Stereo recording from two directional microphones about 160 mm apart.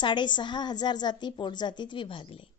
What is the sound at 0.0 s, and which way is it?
A woman's voice, 30° left (ahead or behind).